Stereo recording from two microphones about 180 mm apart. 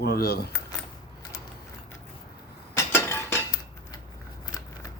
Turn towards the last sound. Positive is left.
turn(degrees=15)  # may be behind; listen again after turning